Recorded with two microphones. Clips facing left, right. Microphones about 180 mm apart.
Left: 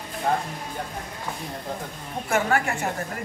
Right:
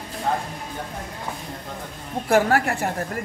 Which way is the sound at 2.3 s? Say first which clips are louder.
Right 5 dB; 35° right (ahead or behind).